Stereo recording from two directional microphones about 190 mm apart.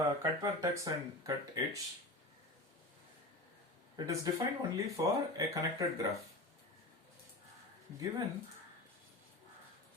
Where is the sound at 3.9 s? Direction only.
20° right (ahead or behind).